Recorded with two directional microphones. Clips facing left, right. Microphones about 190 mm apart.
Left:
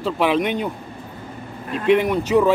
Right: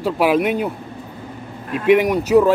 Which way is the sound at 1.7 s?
10° right (ahead or behind).